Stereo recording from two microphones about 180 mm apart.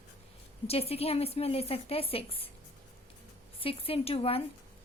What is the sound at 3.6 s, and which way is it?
Speech, 30° left (ahead or behind).